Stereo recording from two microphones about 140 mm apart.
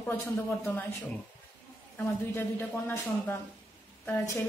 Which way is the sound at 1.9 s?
10° left (ahead or behind).